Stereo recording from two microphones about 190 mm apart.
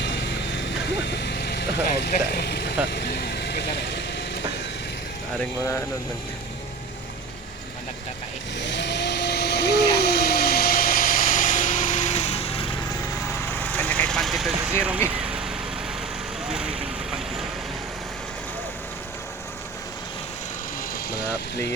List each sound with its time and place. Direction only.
0.8 s vehicle: 65° left (ahead or behind)
2.8 s speech: 60° left (ahead or behind)
8.5 s a sound: 70° left (ahead or behind); by 12.6 s 30° left (ahead or behind)
13.7 s speech: 10° left (ahead or behind)
15.2 s vehicle: 5° right (ahead or behind)